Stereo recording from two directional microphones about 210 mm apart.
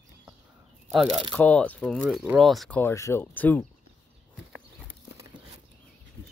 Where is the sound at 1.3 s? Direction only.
5° left (ahead or behind).